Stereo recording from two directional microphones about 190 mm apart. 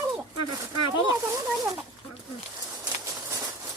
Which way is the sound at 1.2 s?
15° right (ahead or behind).